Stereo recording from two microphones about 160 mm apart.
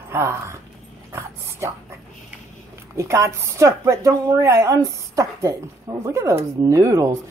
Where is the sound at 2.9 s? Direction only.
20° right (ahead or behind).